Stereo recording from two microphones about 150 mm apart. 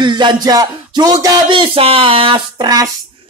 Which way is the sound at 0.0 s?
30° right (ahead or behind).